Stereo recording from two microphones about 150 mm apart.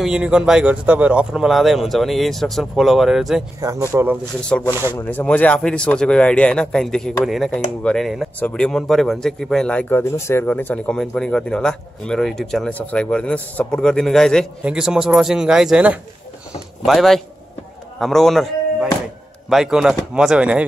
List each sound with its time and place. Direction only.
0.0 s a man's voice: 5° right (ahead or behind)
3.6 s a man's voice: 20° right (ahead or behind)
4.4 s a man's voice: 5° left (ahead or behind)
4.6 s speech: 15° right (ahead or behind)
4.9 s a man's voice: 10° left (ahead or behind); by 20.6 s 5° right (ahead or behind)